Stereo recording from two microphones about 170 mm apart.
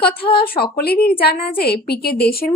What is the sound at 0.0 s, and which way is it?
A woman's voice, 65° left (ahead or behind).